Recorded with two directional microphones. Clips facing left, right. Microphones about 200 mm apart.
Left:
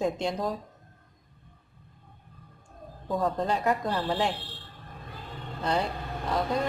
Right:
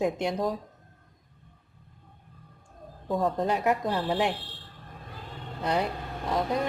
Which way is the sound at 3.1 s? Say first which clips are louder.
Right 1 dB; centre (ahead or behind).